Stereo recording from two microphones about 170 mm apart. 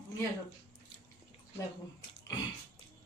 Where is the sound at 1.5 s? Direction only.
20° left (ahead or behind).